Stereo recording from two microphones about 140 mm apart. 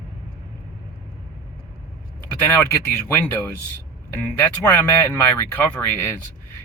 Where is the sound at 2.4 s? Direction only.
15° left (ahead or behind).